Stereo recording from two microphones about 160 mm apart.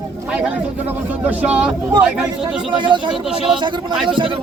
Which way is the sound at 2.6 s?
30° right (ahead or behind).